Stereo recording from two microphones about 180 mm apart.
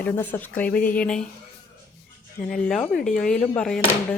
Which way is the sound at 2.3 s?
5° left (ahead or behind).